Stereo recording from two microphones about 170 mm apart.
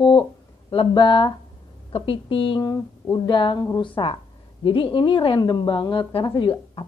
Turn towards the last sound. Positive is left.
turn(degrees=30)  # may be behind; listen again after turning